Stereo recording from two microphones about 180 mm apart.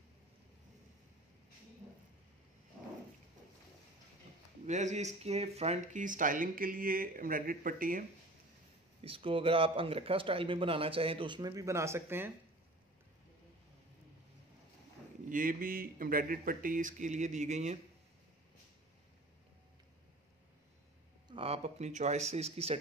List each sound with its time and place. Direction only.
4.6 s speech: 40° right (ahead or behind)
9.0 s speech: 30° right (ahead or behind); by 12.3 s 15° right (ahead or behind)
15.2 s speech: 50° right (ahead or behind)
21.3 s speech: 30° right (ahead or behind)